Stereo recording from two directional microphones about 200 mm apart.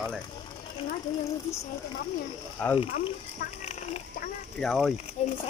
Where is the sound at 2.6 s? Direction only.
10° left (ahead or behind).